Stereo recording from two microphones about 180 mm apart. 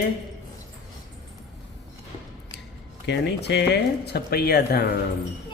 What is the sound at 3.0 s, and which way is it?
Speech, 70° left (ahead or behind).